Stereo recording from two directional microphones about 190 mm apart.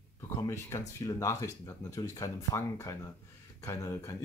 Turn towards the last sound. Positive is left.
turn(degrees=15)  # may be behind; listen again after turning